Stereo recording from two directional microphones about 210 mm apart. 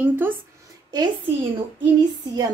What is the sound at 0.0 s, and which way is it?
Speech, 10° right (ahead or behind).